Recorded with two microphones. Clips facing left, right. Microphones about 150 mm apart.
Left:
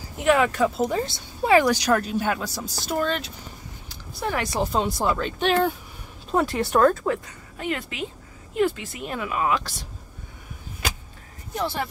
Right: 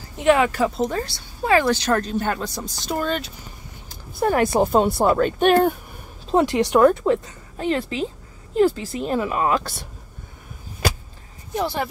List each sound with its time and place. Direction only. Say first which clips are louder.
0.2 s speech: right 2 dB; centre (ahead or behind)
0.7 s speech: even; 10° left (ahead or behind)
3.9 s speech: right 7 dB; 50° right (ahead or behind)
6.3 s speech: right 4 dB; 20° right (ahead or behind)
7.5 s speech: right 6 dB; 30° right (ahead or behind); by 9.8 s 50° right (ahead or behind)